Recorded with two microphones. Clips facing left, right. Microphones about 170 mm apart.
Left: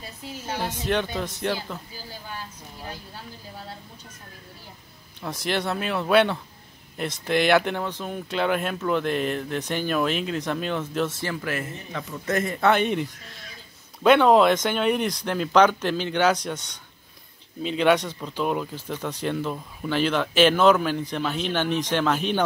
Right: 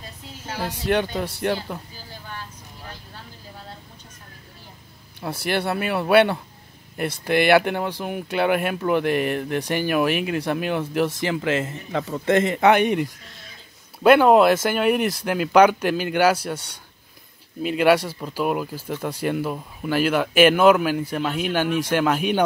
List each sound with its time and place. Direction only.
0.6 s speech: 10° right (ahead or behind)
5.2 s speech: 10° right (ahead or behind); by 11.7 s 25° right (ahead or behind)
11.9 s speech: 35° right (ahead or behind); by 12.9 s 15° right (ahead or behind)
13.9 s speech: 5° right (ahead or behind)